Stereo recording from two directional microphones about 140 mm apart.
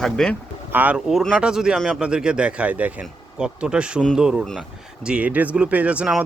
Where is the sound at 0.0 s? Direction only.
5° left (ahead or behind).